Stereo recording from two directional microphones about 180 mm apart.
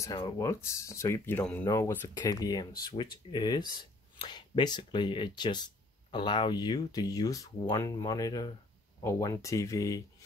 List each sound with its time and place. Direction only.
0.0 s speech: 20° left (ahead or behind)